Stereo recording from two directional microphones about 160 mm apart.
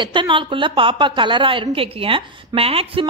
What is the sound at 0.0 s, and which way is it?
A woman's voice, 30° right (ahead or behind).